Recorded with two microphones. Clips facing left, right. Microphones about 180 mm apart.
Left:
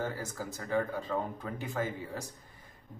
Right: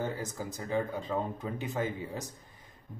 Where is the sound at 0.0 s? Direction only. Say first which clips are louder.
Right 1 dB; 20° right (ahead or behind).